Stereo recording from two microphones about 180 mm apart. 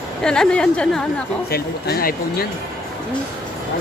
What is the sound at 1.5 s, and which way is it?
Speech, 60° left (ahead or behind).